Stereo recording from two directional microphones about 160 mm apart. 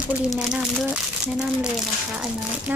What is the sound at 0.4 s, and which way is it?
Speech, 5° right (ahead or behind).